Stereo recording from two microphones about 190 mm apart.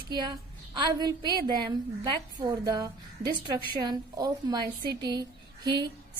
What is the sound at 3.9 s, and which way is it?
A woman's voice, 20° right (ahead or behind).